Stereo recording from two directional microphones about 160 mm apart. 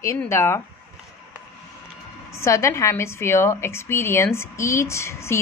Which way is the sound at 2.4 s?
20° left (ahead or behind).